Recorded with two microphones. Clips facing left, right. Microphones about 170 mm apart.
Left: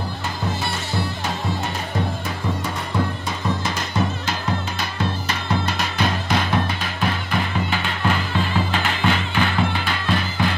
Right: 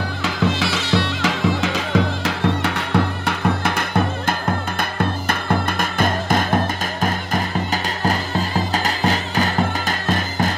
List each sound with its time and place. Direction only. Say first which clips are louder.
0.2 s music: right 8 dB; 90° right; by 10.5 s 45° right (ahead or behind)